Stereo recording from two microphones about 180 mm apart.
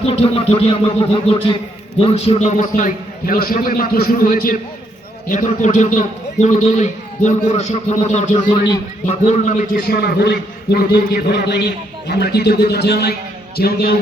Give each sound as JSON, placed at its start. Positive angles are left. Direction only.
{"t": 0.0, "sound": "a man's voice", "side_deg": 30}